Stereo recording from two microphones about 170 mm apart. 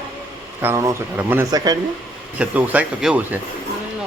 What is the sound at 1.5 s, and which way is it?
Speech, 25° right (ahead or behind).